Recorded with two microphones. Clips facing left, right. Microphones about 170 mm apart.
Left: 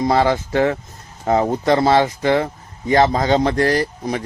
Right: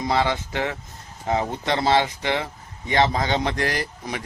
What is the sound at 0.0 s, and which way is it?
Speech, 45° left (ahead or behind).